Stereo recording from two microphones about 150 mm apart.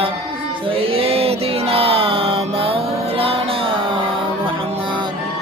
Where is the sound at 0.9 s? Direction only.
40° right (ahead or behind).